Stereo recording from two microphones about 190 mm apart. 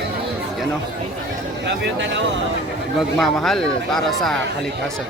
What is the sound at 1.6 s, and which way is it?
Speech, 65° right (ahead or behind).